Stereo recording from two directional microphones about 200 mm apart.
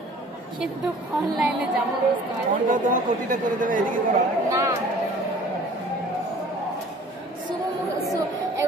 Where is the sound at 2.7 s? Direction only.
40° right (ahead or behind).